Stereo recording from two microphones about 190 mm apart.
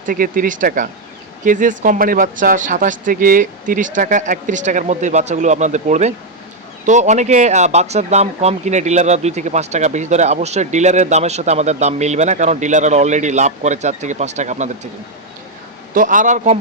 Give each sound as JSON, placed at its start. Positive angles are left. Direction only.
{"t": 0.0, "sound": "speech", "side_deg": -45}
{"t": 16.0, "sound": "speech", "side_deg": -45}